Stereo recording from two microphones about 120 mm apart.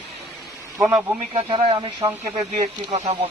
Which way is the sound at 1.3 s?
50° right (ahead or behind).